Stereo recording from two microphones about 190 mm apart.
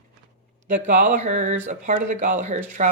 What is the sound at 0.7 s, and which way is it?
Speech, 40° right (ahead or behind).